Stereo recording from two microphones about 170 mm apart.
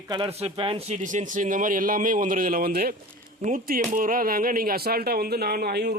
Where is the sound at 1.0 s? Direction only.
50° right (ahead or behind).